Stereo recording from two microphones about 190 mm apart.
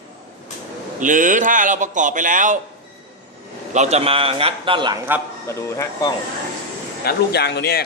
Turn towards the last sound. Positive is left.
turn(degrees=60)  # may be behind; listen again after turning